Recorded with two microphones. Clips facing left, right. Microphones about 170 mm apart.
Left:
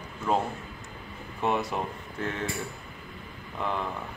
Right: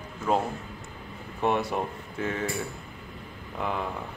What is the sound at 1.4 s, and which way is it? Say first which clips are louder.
Speech: right 2 dB; centre (ahead or behind).